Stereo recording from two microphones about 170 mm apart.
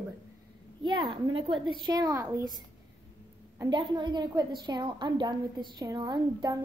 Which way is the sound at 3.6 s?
30° right (ahead or behind).